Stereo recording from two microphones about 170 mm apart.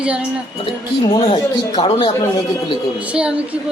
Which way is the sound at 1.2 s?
30° left (ahead or behind).